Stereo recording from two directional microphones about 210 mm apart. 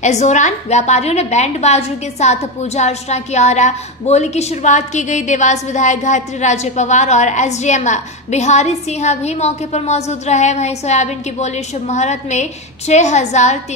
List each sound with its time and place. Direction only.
0.0 s a woman's voice: 35° left (ahead or behind)